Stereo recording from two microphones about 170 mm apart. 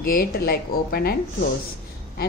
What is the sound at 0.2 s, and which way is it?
Speech, 65° left (ahead or behind).